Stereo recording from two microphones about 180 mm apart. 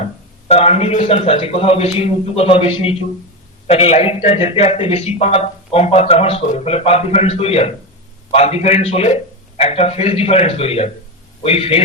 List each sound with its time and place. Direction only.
0.4 s a man's voice: 35° left (ahead or behind)